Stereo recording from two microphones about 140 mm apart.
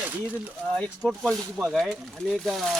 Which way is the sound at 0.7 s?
10° left (ahead or behind).